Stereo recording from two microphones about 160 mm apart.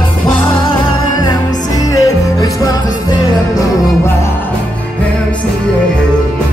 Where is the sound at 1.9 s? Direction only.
20° left (ahead or behind).